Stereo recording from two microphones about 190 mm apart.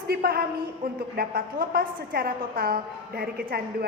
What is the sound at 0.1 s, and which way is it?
A woman's voice, 50° right (ahead or behind).